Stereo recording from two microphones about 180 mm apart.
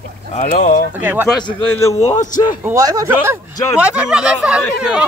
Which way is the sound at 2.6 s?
20° right (ahead or behind).